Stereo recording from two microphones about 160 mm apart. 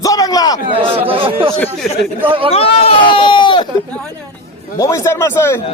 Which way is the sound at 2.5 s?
40° left (ahead or behind).